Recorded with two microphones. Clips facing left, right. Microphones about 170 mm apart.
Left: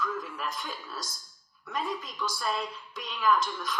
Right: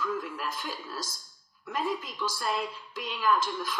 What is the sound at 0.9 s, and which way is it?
Speech, 25° right (ahead or behind).